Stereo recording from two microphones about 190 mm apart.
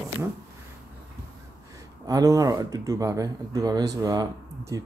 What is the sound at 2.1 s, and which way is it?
Speech, 20° right (ahead or behind).